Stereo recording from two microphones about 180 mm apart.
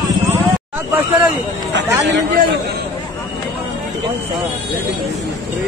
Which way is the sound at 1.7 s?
80° right.